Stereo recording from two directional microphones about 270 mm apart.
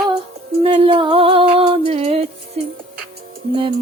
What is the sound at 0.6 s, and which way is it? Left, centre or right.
Music, right.